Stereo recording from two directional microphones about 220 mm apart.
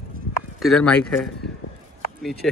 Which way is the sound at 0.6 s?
Centre (ahead or behind).